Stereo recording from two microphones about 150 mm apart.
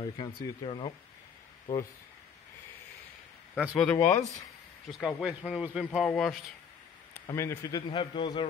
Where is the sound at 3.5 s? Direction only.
5° right (ahead or behind).